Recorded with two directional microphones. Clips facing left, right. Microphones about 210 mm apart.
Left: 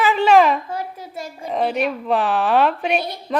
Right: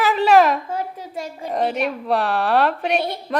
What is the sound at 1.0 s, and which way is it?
Speech, 15° right (ahead or behind).